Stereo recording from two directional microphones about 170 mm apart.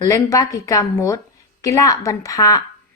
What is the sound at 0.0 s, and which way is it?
A woman's voice, 20° left (ahead or behind).